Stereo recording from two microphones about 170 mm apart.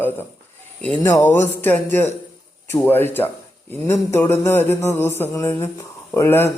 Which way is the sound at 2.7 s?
15° left (ahead or behind).